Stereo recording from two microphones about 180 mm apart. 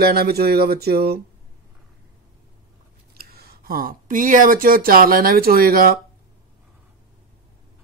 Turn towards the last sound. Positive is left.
turn(degrees=-55)  # may be behind; listen again after turning